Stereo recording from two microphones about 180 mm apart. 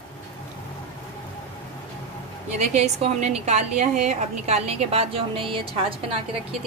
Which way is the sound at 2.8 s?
40° right (ahead or behind).